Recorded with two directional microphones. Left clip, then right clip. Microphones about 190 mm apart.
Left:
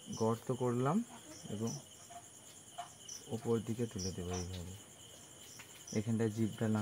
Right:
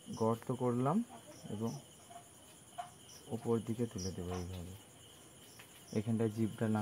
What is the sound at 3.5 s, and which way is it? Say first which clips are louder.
Speech: even; 20° left (ahead or behind).